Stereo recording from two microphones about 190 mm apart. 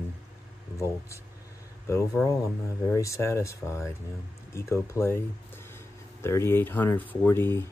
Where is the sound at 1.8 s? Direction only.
15° left (ahead or behind).